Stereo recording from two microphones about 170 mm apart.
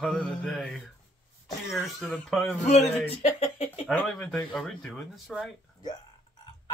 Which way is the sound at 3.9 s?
5° left (ahead or behind).